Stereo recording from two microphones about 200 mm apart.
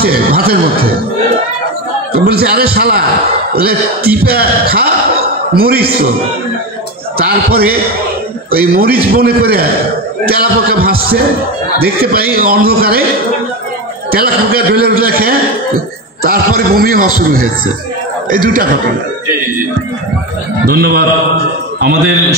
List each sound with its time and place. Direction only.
0.0 s a man's voice: 50° right (ahead or behind)
2.1 s a man's voice: 50° right (ahead or behind)
7.2 s a man's voice: 50° right (ahead or behind)
14.1 s a man's voice: 50° right (ahead or behind)
18.3 s a man's voice: 45° right (ahead or behind)
20.6 s a man's voice: 50° right (ahead or behind)